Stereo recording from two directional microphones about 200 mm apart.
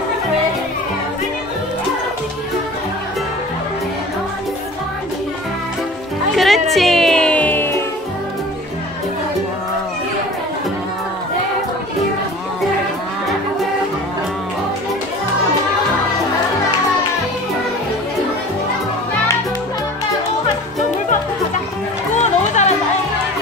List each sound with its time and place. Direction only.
6.3 s music: centre (ahead or behind)
22.2 s music: 35° left (ahead or behind)